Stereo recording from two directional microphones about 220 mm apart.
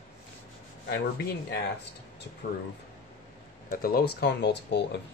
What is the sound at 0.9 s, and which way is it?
Speech, 45° left (ahead or behind).